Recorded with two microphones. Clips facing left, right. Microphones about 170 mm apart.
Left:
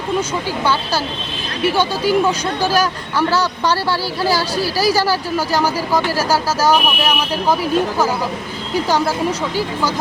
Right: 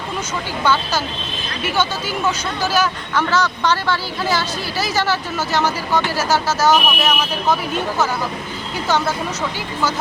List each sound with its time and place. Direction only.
0.6 s speech: 10° left (ahead or behind)
2.6 s speech: 35° left (ahead or behind)
3.2 s speech: 10° left (ahead or behind)
4.2 s speech: 35° left (ahead or behind)
6.1 s speech: 30° left (ahead or behind)
6.7 s speech: 10° left (ahead or behind)